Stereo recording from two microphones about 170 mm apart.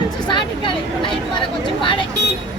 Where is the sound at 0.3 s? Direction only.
30° left (ahead or behind).